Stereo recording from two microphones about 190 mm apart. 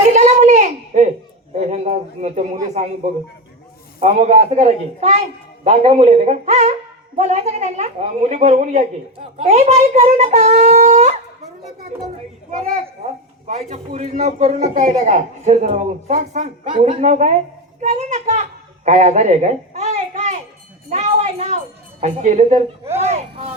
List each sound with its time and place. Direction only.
0.1 s a sound: 35° right (ahead or behind)
2.8 s speech: 35° right (ahead or behind)
4.0 s speech: 35° right (ahead or behind)
13.1 s a child's voice: 35° right (ahead or behind)